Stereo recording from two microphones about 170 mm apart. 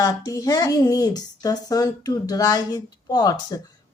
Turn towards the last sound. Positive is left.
turn(degrees=25)  # may be behind; listen again after turning